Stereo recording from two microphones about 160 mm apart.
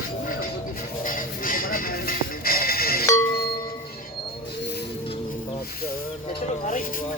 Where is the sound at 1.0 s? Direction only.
60° left (ahead or behind).